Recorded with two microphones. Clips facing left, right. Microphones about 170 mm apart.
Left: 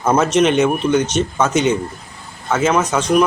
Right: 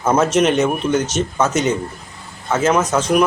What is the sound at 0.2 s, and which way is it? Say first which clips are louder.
Speech: left 1 dB; 5° right (ahead or behind).